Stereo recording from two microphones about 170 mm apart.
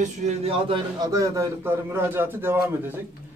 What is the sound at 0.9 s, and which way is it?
A man's voice, 20° right (ahead or behind).